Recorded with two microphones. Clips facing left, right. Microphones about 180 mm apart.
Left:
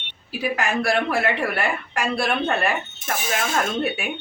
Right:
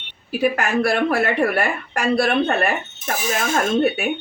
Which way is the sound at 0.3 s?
50° right (ahead or behind).